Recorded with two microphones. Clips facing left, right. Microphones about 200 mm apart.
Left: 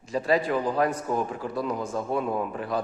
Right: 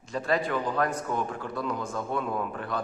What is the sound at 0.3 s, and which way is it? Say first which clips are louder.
A man's voice: left 2 dB; 30° left (ahead or behind).